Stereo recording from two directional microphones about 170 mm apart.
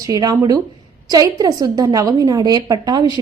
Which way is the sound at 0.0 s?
20° right (ahead or behind).